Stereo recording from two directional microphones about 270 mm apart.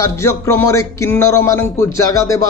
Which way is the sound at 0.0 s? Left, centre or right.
Centre.